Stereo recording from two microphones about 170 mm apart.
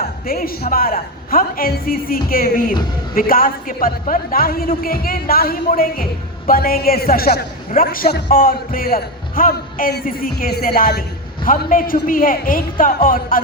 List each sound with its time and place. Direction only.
0.3 s a man's voice: 60° left (ahead or behind)